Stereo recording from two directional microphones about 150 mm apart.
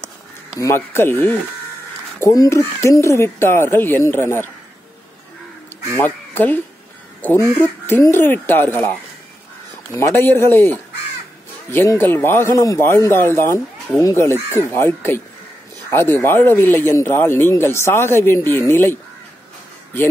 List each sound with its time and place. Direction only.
0.6 s speech: 20° left (ahead or behind)
5.9 s speech: 15° left (ahead or behind)
7.3 s speech: 15° right (ahead or behind)
7.8 s speech: 15° left (ahead or behind)
9.9 s speech: 15° left (ahead or behind)